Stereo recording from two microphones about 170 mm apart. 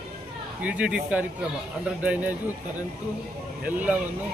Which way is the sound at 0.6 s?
5° right (ahead or behind).